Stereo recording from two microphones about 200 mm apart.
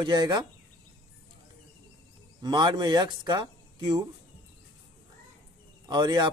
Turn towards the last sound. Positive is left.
turn(degrees=-20)  # may be behind; listen again after turning